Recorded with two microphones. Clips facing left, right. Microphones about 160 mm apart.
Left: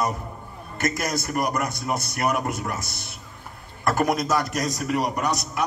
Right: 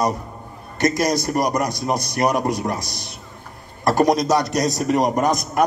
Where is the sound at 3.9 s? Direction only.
35° right (ahead or behind).